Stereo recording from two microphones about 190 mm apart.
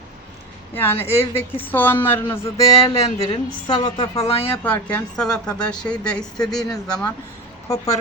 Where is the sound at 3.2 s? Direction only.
20° left (ahead or behind).